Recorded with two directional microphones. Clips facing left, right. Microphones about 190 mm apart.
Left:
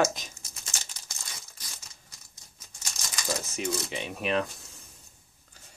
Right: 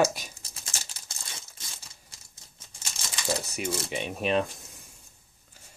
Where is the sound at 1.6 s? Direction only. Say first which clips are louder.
Right 1 dB; 25° right (ahead or behind).